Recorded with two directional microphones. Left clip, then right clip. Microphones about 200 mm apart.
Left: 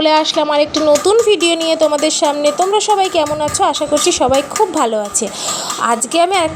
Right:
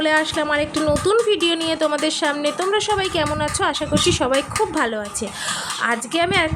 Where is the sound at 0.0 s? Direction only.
10° left (ahead or behind).